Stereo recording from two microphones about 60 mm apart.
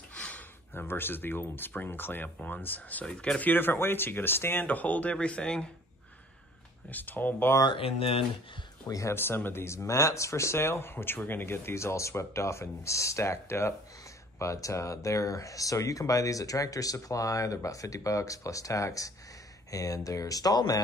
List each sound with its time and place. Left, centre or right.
0.1 s a sound: centre
0.7 s speech: left
3.1 s speech: centre
3.4 s speech: left
4.6 s speech: left
6.9 s speech: left
8.8 s speech: left
9.1 s speech: left